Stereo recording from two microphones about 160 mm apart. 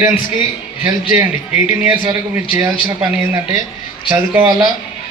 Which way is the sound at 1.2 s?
10° right (ahead or behind).